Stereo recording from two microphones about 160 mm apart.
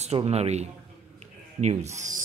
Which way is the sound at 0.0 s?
40° right (ahead or behind).